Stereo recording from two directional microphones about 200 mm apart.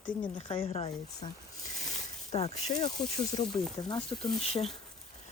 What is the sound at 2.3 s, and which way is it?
Speech, 30° left (ahead or behind).